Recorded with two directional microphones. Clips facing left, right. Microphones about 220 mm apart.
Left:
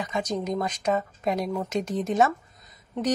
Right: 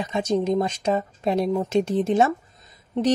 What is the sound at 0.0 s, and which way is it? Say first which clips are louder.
A woman's voice: right 6 dB; 25° right (ahead or behind).